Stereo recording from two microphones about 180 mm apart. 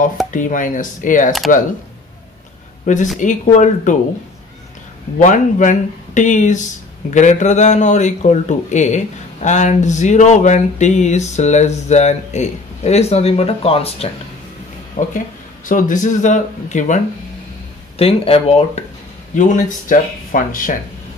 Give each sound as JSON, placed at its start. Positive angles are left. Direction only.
{"t": 0.3, "sound": "speech", "side_deg": 45}
{"t": 2.9, "sound": "speech", "side_deg": 45}
{"t": 5.2, "sound": "a man's voice", "side_deg": 45}
{"t": 19.3, "sound": "speech", "side_deg": 45}